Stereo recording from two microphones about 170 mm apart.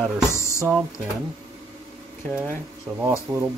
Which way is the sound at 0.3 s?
15° left (ahead or behind).